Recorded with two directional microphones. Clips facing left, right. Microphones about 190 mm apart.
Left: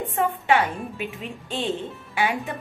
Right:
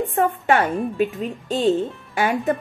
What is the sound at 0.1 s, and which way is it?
A woman's voice, 45° right (ahead or behind).